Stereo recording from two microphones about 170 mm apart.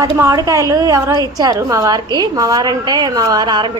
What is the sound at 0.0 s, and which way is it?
A woman's voice, 20° right (ahead or behind).